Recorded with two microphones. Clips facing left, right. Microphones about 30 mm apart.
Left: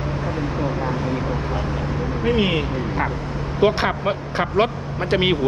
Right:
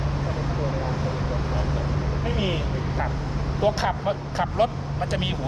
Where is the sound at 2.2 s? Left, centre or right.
Left.